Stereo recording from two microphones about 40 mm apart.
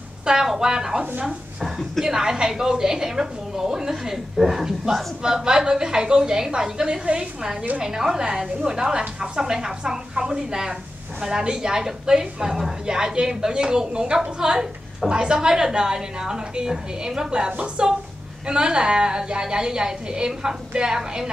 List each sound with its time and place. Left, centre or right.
0.2 s a woman's voice: centre
1.6 s a woman's voice: centre
2.0 s a woman's voice: centre